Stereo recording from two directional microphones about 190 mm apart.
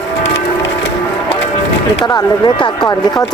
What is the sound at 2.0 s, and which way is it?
Speech, 20° left (ahead or behind).